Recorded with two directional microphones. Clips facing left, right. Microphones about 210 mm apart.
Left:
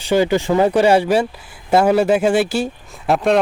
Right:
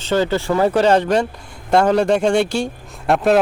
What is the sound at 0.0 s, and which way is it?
Speech, 10° left (ahead or behind).